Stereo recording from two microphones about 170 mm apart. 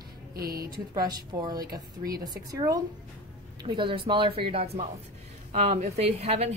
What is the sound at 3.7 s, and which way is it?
Speech, 30° right (ahead or behind).